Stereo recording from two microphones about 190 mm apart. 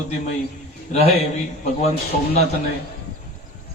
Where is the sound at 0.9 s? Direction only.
30° left (ahead or behind).